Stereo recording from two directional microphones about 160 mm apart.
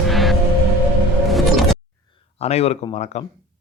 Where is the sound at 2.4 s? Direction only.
40° left (ahead or behind).